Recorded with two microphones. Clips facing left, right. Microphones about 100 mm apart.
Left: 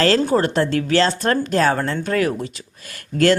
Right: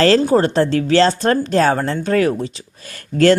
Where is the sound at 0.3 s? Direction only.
30° right (ahead or behind).